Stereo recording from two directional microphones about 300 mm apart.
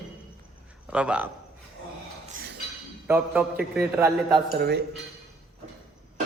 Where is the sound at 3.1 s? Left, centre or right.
Centre.